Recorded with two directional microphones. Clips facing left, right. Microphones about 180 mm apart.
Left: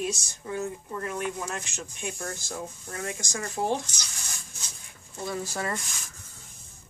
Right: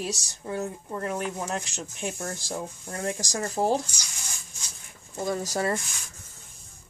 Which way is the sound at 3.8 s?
10° right (ahead or behind).